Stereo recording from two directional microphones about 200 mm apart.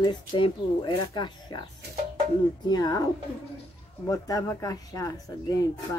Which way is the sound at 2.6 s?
20° left (ahead or behind).